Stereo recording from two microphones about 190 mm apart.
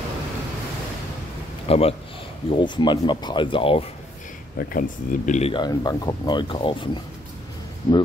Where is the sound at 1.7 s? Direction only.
30° left (ahead or behind).